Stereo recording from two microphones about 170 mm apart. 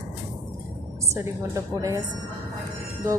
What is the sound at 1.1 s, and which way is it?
Speech, 15° right (ahead or behind).